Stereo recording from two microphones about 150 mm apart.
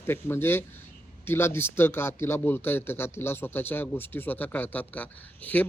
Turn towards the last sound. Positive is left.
turn(degrees=10)  # may be behind; listen again after turning